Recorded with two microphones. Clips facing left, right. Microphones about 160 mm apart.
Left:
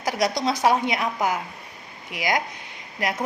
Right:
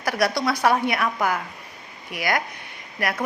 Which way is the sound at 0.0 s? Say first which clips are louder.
Right 1 dB; 20° left (ahead or behind).